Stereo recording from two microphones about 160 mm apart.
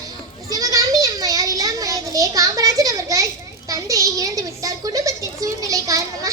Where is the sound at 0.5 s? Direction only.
20° right (ahead or behind).